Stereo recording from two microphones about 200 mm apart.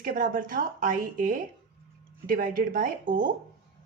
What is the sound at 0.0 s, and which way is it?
A woman's voice, 45° right (ahead or behind).